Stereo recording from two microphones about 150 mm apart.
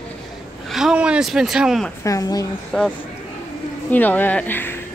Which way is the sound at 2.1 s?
25° left (ahead or behind).